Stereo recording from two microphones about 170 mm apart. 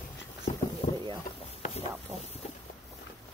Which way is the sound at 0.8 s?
35° left (ahead or behind).